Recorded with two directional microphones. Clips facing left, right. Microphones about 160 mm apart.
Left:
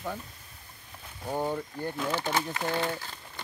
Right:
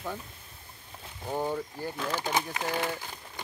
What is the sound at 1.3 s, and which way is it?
Speech, 15° left (ahead or behind).